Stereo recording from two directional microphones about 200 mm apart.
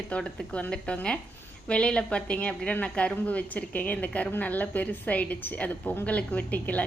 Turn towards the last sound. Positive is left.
turn(degrees=10)  # may be behind; listen again after turning